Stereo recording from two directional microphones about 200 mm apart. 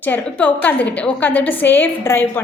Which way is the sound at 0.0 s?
10° left (ahead or behind).